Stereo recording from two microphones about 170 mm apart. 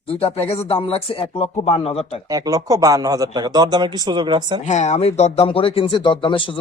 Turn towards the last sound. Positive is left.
turn(degrees=30)  # may be behind; listen again after turning